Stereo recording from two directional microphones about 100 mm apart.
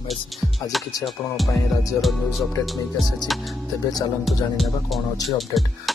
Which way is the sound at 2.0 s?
Centre (ahead or behind).